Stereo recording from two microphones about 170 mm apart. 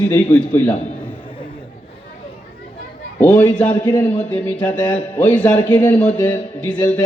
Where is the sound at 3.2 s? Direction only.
10° left (ahead or behind).